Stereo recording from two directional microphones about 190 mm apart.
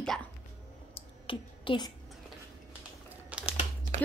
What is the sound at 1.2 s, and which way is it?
Speech, 25° left (ahead or behind).